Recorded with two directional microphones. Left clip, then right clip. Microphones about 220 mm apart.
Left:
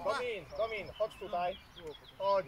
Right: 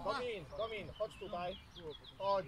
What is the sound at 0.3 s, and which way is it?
Speech, 10° right (ahead or behind).